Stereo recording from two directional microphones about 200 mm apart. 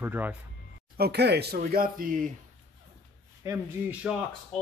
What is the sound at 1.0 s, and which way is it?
Speech, 55° right (ahead or behind).